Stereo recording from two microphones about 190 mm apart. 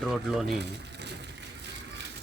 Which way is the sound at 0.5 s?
65° right (ahead or behind).